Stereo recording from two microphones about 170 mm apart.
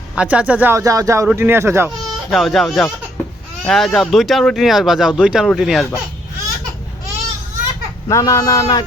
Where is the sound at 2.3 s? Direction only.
Centre (ahead or behind).